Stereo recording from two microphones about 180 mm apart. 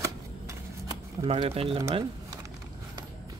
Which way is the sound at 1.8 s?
20° right (ahead or behind).